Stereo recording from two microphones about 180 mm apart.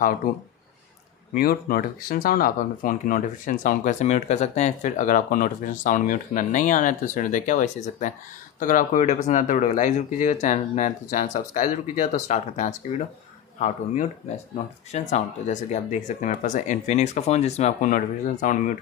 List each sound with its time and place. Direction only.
1.4 s speech: 55° left (ahead or behind)